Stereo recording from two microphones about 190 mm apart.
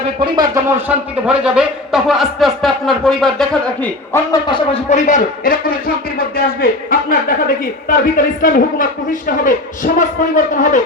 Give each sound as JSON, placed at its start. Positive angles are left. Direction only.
{"t": 0.2, "sound": "speech", "side_deg": -25}
{"t": 0.9, "sound": "a man's voice", "side_deg": -5}
{"t": 4.9, "sound": "a man's voice", "side_deg": 40}